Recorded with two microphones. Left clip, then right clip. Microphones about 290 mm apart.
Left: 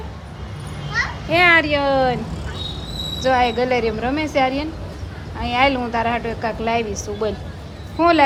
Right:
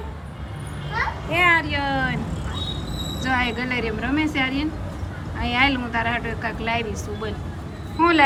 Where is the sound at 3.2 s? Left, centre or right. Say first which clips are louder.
Left 7 dB; centre.